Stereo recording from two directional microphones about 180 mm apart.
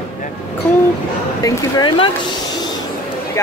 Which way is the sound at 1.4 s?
25° left (ahead or behind).